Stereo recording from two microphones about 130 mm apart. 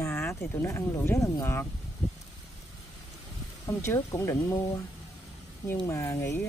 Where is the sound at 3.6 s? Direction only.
20° left (ahead or behind).